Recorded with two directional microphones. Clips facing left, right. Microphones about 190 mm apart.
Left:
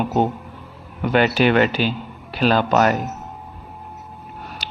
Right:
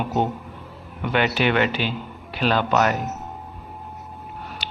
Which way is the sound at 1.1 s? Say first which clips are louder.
Left 5 dB; 40° left (ahead or behind).